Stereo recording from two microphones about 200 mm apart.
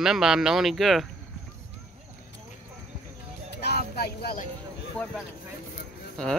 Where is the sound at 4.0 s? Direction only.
50° left (ahead or behind).